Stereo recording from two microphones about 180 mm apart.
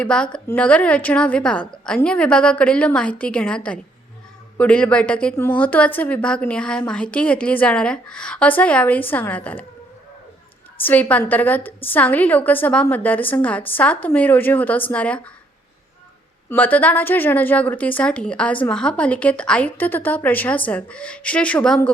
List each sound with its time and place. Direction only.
0.0 s a woman's voice: 5° left (ahead or behind)
10.8 s a woman's voice: 10° left (ahead or behind)
16.5 s a woman's voice: 10° left (ahead or behind)